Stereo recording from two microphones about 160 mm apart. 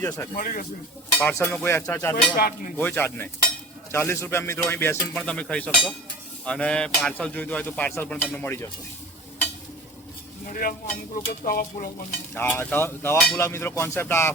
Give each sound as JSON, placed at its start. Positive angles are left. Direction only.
{"t": 0.3, "sound": "stir", "side_deg": 60}
{"t": 1.2, "sound": "speech", "side_deg": 10}
{"t": 10.4, "sound": "stir", "side_deg": 60}
{"t": 12.3, "sound": "speech", "side_deg": 15}